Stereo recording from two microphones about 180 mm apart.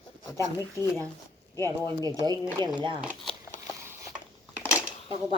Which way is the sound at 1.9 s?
20° right (ahead or behind).